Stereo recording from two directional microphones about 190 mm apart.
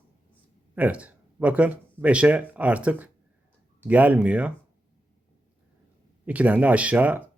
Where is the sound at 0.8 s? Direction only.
5° right (ahead or behind).